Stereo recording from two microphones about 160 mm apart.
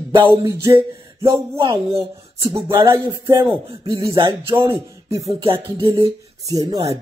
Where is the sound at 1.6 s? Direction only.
35° right (ahead or behind).